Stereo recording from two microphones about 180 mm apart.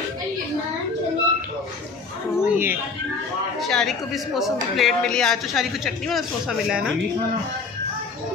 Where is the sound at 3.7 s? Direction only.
Centre (ahead or behind).